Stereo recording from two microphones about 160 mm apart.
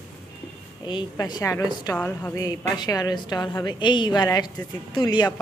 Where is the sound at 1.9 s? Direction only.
10° left (ahead or behind).